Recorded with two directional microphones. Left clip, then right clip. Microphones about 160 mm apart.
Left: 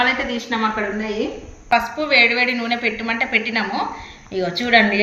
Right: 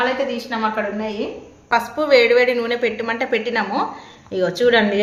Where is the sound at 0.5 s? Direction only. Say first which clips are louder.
Left 2 dB; 45° right (ahead or behind).